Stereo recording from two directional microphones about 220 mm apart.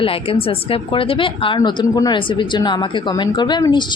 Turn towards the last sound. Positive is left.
turn(degrees=20)  # may be behind; listen again after turning